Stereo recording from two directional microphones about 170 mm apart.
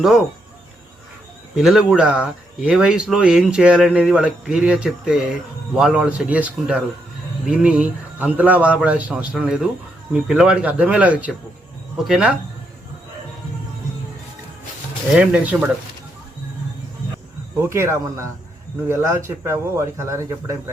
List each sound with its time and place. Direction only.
1.5 s a man's voice: centre (ahead or behind)
15.1 s a man's voice: 10° right (ahead or behind)
17.6 s a man's voice: 15° right (ahead or behind)